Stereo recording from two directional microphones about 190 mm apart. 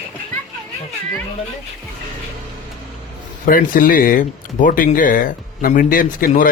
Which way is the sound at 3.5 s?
45° left (ahead or behind).